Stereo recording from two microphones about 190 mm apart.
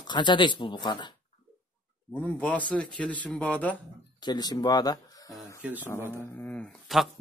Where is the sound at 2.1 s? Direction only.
5° left (ahead or behind).